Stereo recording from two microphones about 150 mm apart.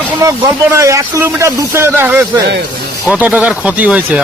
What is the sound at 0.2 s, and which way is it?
Speech, 20° right (ahead or behind).